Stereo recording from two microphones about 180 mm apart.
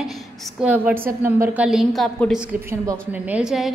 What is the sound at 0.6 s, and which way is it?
A woman's voice, 10° right (ahead or behind).